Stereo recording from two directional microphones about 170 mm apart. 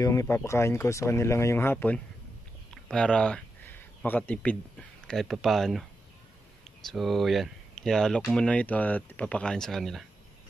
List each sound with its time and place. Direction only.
0.0 s speech: 20° left (ahead or behind); by 5.9 s centre (ahead or behind)
6.9 s speech: centre (ahead or behind)